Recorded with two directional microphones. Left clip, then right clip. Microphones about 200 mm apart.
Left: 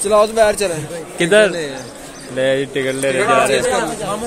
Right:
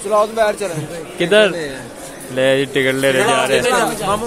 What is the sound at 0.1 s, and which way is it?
Speech, 50° left (ahead or behind).